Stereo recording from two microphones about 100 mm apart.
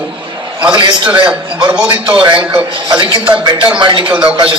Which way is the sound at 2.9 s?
50° right (ahead or behind).